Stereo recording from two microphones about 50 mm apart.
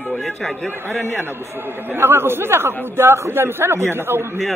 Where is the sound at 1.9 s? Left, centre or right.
Right.